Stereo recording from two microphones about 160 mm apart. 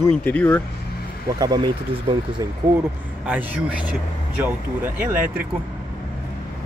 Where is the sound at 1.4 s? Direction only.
25° right (ahead or behind).